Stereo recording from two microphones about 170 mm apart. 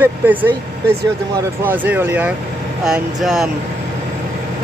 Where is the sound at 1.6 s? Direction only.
10° right (ahead or behind).